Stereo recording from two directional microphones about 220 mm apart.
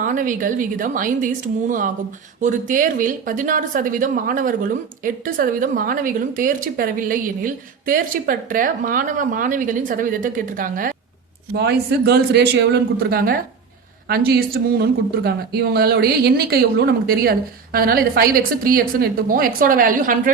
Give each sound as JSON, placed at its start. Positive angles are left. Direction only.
{"t": 0.0, "sound": "speech", "side_deg": -35}